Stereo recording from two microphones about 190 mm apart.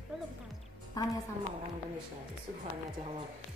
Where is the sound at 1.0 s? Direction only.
20° left (ahead or behind).